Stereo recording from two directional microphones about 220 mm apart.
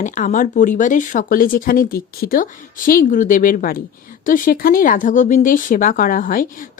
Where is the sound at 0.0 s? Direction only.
35° left (ahead or behind).